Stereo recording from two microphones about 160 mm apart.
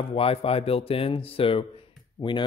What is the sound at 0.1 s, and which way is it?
Speech, 35° left (ahead or behind).